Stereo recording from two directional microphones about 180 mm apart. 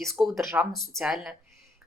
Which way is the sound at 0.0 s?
Centre (ahead or behind).